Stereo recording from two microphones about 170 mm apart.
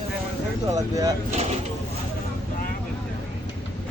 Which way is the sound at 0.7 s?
20° right (ahead or behind).